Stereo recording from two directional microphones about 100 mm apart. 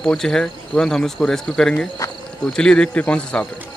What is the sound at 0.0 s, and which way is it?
Speech, 5° left (ahead or behind).